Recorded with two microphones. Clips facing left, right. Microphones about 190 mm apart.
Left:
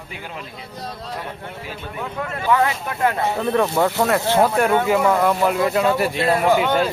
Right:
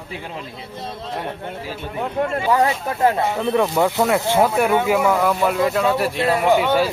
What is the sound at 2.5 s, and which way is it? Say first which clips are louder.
Speech: left 2 dB; 35° right (ahead or behind).